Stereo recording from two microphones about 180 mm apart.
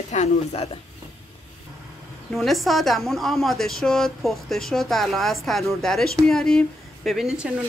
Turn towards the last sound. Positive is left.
turn(degrees=-5)  # may be behind; listen again after turning